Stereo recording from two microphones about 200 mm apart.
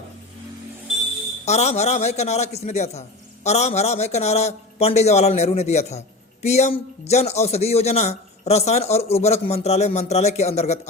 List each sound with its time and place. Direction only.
1.5 s a man's voice: 35° left (ahead or behind)